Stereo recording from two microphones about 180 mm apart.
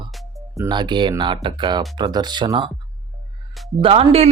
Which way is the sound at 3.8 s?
30° right (ahead or behind).